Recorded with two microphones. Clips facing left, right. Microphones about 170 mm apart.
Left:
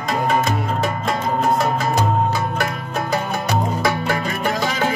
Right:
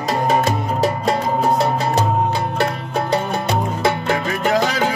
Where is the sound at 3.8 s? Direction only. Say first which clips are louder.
Right 2 dB; 25° right (ahead or behind).